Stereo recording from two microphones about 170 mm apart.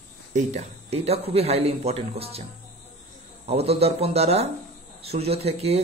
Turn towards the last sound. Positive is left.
turn(degrees=-35)  # may be behind; listen again after turning